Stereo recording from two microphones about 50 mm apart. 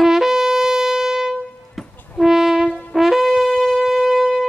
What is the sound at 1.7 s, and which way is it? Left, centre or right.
Music, centre.